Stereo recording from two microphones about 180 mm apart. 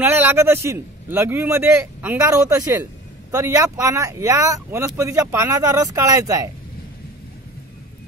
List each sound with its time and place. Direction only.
0.0 s a man's voice: 10° right (ahead or behind)